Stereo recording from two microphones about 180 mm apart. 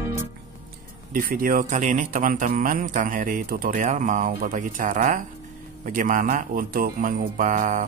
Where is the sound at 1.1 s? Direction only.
50° right (ahead or behind).